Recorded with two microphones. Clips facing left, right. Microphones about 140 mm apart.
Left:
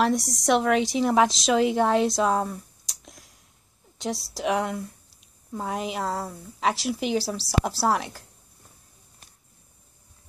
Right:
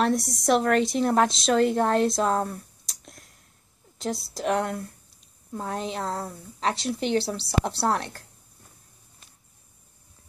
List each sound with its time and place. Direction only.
0.0 s a woman's voice: centre (ahead or behind)